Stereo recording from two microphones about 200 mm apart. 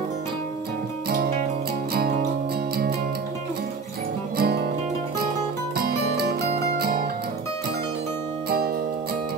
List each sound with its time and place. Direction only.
4.4 s music: 50° right (ahead or behind)
5.8 s music: 55° right (ahead or behind)
8.5 s music: 50° right (ahead or behind)